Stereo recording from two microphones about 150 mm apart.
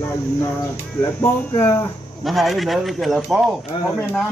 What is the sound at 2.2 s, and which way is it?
Speech, centre (ahead or behind).